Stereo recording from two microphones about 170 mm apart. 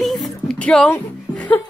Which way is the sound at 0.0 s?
Centre (ahead or behind).